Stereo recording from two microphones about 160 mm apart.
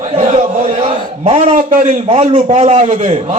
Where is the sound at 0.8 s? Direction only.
45° right (ahead or behind).